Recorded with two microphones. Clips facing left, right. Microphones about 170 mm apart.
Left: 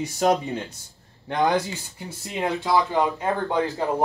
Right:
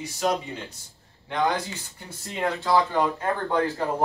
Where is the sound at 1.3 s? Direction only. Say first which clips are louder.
Left 3 dB; 15° left (ahead or behind).